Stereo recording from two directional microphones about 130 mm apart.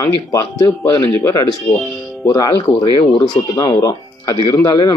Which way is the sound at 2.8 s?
40° left (ahead or behind).